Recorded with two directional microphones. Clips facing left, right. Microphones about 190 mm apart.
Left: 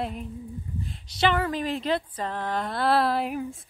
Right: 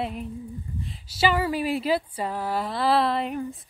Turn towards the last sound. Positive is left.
turn(degrees=5)  # may be behind; listen again after turning